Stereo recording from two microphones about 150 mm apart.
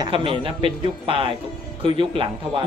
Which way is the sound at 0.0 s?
35° right (ahead or behind).